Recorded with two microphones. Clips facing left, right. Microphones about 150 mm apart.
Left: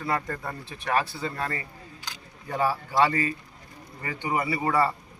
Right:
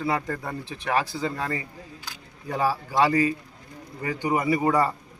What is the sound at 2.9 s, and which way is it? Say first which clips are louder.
Speech: right 4 dB; 15° right (ahead or behind).